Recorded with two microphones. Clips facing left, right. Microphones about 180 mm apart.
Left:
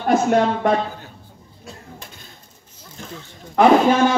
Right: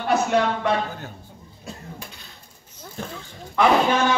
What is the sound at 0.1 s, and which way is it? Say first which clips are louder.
Speech: left 4 dB; 50° left (ahead or behind).